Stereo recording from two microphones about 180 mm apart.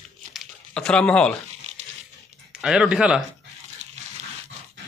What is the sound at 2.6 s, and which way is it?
Speech, 5° right (ahead or behind).